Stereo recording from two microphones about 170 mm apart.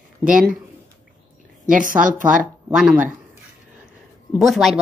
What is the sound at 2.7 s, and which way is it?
Speech, 5° right (ahead or behind).